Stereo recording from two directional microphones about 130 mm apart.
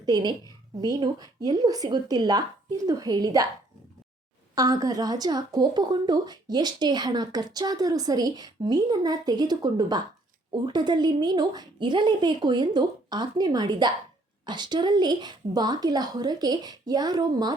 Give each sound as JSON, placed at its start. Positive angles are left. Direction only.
{"t": 0.0, "sound": "a woman's voice", "side_deg": -30}
{"t": 4.5, "sound": "a woman's voice", "side_deg": -30}